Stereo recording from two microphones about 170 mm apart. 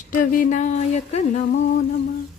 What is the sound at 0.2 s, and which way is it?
Speech, 50° left (ahead or behind).